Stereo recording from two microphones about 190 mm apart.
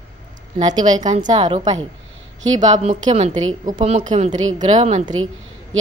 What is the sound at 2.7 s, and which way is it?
A woman's voice, 40° right (ahead or behind).